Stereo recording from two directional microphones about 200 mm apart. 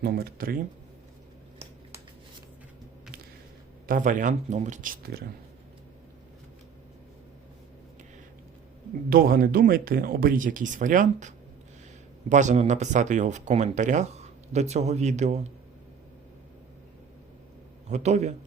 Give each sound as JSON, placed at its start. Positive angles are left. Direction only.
{"t": 0.0, "sound": "speech", "side_deg": -50}
{"t": 3.8, "sound": "speech", "side_deg": -40}
{"t": 9.0, "sound": "speech", "side_deg": -45}
{"t": 17.8, "sound": "speech", "side_deg": -35}